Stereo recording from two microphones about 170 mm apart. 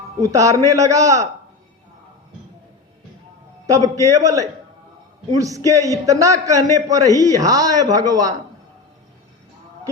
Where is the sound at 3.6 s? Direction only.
20° right (ahead or behind).